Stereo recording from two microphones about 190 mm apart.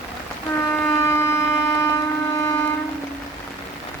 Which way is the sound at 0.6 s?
15° left (ahead or behind).